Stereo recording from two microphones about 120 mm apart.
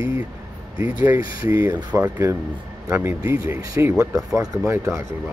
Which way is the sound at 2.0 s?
20° right (ahead or behind).